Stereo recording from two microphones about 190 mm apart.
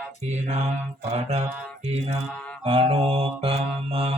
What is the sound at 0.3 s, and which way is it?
Mantra, 35° right (ahead or behind).